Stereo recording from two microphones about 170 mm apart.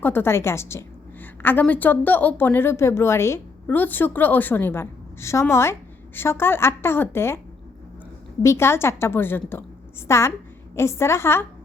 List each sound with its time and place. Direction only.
0.0 s a woman's voice: 15° left (ahead or behind)